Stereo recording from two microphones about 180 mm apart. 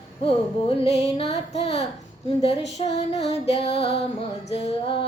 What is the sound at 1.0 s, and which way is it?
Female singing, 35° left (ahead or behind).